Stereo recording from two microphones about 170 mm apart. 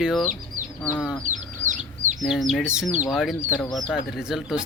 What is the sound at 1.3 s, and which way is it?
Chicken, 45° right (ahead or behind).